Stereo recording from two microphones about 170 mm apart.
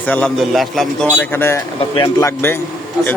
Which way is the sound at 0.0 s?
5° left (ahead or behind).